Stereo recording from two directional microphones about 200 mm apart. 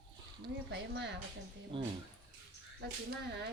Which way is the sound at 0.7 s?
60° right (ahead or behind).